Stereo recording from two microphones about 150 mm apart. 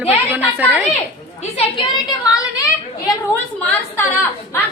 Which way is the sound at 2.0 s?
25° left (ahead or behind).